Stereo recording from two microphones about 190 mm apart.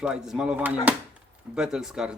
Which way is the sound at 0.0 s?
5° right (ahead or behind).